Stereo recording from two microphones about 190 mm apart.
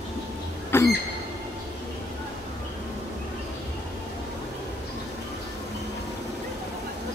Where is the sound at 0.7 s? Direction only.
15° left (ahead or behind).